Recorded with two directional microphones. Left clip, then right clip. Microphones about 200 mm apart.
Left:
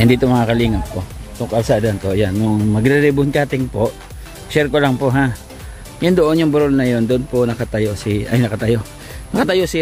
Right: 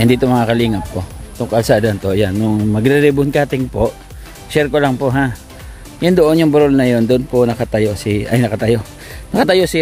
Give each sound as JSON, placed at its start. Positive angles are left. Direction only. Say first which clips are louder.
{"t": 0.0, "sound": "speech", "louder": "right 1 dB", "side_deg": -10}